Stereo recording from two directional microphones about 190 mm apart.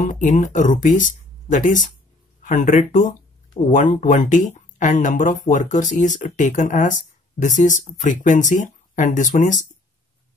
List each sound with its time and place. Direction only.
0.0 s speech: 40° left (ahead or behind)